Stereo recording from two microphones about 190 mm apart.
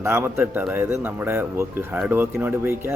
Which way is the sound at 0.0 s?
15° right (ahead or behind).